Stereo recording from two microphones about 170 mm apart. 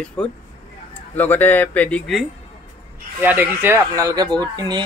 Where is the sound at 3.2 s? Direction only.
10° right (ahead or behind).